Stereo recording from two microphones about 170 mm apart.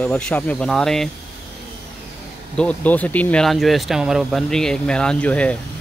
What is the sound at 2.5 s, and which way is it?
Speech, 10° left (ahead or behind).